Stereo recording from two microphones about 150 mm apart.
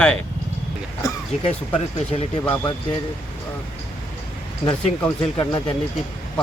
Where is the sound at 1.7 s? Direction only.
40° left (ahead or behind).